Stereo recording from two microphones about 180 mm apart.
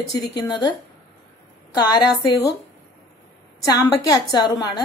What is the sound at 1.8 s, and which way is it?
Speech, 25° left (ahead or behind).